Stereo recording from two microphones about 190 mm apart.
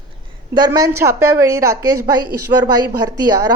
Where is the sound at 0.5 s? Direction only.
20° right (ahead or behind).